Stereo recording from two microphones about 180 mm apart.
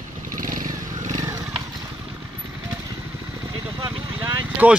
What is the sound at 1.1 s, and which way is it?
Wild animals, 20° right (ahead or behind).